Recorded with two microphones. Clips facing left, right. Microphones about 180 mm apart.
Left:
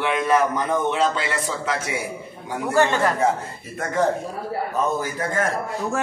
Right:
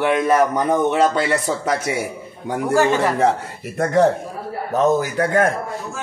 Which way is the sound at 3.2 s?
75° right (ahead or behind).